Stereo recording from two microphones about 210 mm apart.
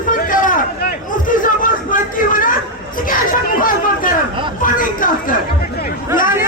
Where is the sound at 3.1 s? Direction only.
40° left (ahead or behind).